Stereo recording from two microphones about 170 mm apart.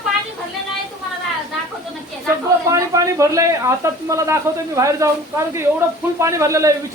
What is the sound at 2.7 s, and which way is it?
A man's voice, 20° right (ahead or behind).